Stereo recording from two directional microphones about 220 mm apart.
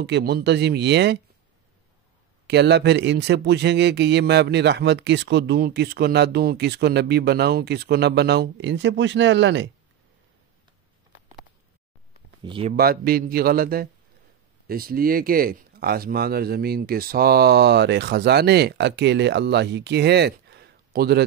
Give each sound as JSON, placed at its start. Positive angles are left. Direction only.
{"t": 0.0, "sound": "speech", "side_deg": -50}
{"t": 2.4, "sound": "speech", "side_deg": -50}
{"t": 12.4, "sound": "speech", "side_deg": -25}
{"t": 12.7, "sound": "speech", "side_deg": -45}